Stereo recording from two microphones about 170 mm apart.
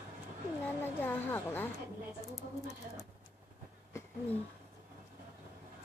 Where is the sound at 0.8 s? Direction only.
10° left (ahead or behind).